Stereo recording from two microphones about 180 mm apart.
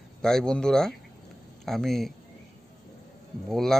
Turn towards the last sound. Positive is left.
turn(degrees=0)  # may be behind; listen again after turning